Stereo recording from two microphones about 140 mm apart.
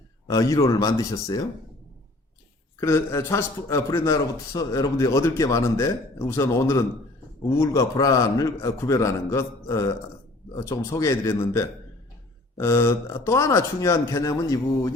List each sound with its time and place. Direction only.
0.3 s a man's voice: 25° left (ahead or behind)
2.8 s a man's voice: 20° left (ahead or behind)